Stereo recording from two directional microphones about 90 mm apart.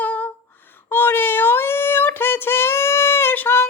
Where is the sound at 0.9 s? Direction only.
25° left (ahead or behind).